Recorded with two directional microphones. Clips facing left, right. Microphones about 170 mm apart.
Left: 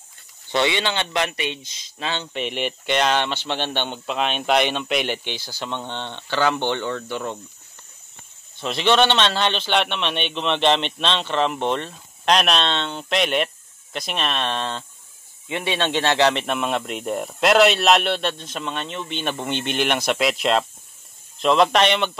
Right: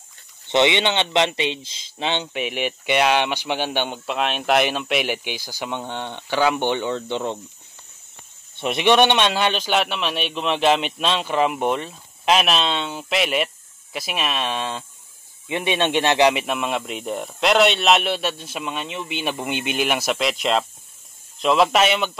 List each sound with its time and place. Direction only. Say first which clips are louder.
0.5 s speech: right 3 dB; 20° right (ahead or behind)
2.3 s speech: right 1 dB; 5° right (ahead or behind)
8.5 s speech: right 2 dB; 20° right (ahead or behind)
15.4 s speech: right 2 dB; 15° right (ahead or behind)